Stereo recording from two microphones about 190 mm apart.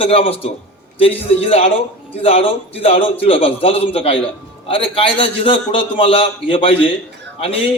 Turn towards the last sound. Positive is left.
turn(degrees=30)  # may be behind; listen again after turning